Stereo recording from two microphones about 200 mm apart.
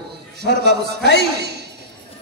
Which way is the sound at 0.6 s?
55° right (ahead or behind).